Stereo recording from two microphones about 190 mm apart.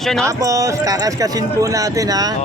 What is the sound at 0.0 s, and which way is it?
Speech, centre (ahead or behind).